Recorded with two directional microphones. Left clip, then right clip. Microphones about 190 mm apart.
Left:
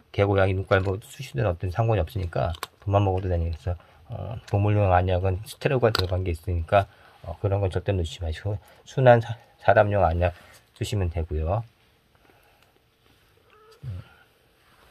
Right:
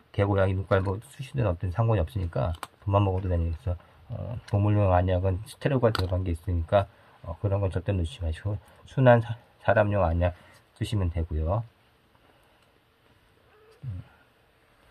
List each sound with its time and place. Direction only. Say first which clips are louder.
0.1 s speech: left 4 dB; 35° left (ahead or behind)
13.8 s speech: even; 70° left (ahead or behind)